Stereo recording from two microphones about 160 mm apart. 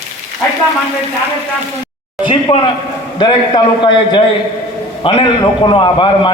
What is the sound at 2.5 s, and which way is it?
A man's voice, 25° left (ahead or behind).